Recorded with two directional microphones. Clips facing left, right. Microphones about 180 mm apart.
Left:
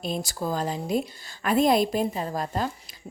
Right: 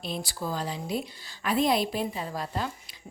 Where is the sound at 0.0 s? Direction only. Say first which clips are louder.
Left 4 dB; 45° left (ahead or behind).